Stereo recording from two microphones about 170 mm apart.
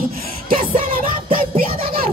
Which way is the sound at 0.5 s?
55° right (ahead or behind).